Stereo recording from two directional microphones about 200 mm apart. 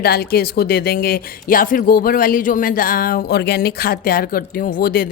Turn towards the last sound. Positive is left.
turn(degrees=50)  # may be behind; listen again after turning